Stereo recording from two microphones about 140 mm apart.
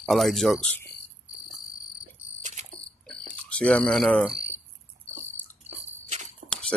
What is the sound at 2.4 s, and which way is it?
Insect, 60° right (ahead or behind).